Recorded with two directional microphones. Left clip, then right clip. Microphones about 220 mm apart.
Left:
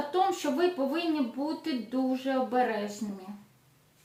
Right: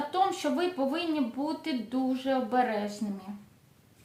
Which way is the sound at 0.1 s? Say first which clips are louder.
Even; 30° right (ahead or behind).